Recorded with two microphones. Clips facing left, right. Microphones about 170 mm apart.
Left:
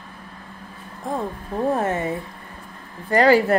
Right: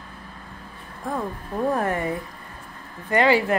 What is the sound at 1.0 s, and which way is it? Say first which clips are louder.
Music: left 1 dB; 20° left (ahead or behind).